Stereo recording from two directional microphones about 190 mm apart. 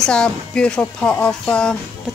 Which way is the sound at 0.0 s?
5° left (ahead or behind).